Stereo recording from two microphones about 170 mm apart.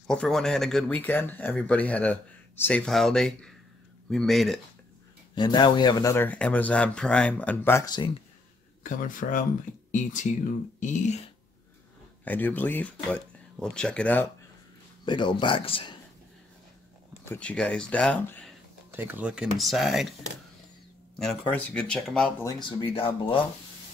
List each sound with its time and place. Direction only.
0.0 s speech: 5° left (ahead or behind)
5.3 s speech: 25° left (ahead or behind)
8.8 s speech: 50° left (ahead or behind)
12.3 s speech: 10° left (ahead or behind)
15.0 s speech: 25° left (ahead or behind)
17.3 s speech: 5° left (ahead or behind)
18.9 s speech: 10° right (ahead or behind)
21.2 s speech: 10° left (ahead or behind)
22.4 s speech: 30° left (ahead or behind)